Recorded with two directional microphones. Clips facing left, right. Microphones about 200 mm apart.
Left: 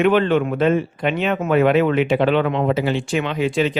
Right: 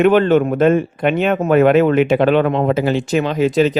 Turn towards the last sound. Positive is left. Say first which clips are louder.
# right 5 dB
turn(degrees=-40)  # may be behind; listen again after turning